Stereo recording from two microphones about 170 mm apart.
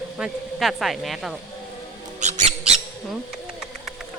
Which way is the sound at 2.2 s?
45° right (ahead or behind).